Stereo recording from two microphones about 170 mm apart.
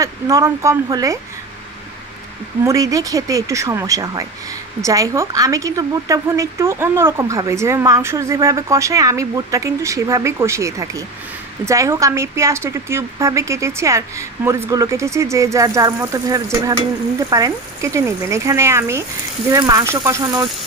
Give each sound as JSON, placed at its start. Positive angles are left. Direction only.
{"t": 0.0, "sound": "speech", "side_deg": -20}
{"t": 2.6, "sound": "speech", "side_deg": -20}